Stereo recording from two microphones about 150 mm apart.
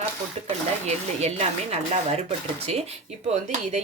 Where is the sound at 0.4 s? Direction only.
45° right (ahead or behind).